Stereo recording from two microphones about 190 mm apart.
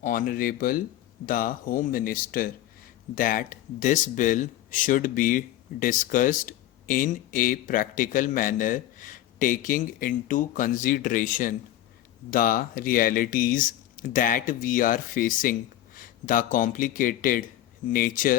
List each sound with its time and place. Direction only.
0.0 s speech: 45° left (ahead or behind)